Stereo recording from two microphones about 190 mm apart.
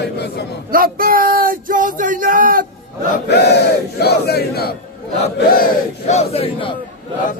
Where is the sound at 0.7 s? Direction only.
50° right (ahead or behind).